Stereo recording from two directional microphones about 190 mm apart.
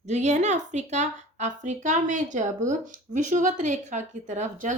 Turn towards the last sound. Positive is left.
turn(degrees=-40)  # may be behind; listen again after turning